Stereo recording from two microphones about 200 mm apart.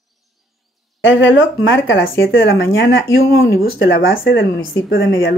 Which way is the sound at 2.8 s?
50° left (ahead or behind).